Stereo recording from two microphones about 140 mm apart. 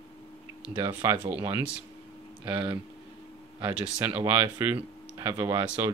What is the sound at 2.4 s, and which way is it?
Speech, 10° right (ahead or behind).